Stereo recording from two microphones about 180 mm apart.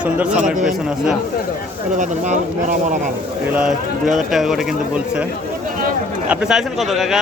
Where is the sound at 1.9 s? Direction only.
45° right (ahead or behind).